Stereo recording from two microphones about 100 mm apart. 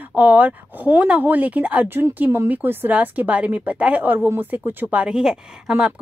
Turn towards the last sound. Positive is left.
turn(degrees=-5)  # may be behind; listen again after turning